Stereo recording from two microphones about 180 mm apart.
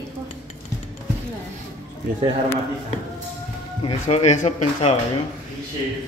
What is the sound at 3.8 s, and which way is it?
Speech, 35° left (ahead or behind).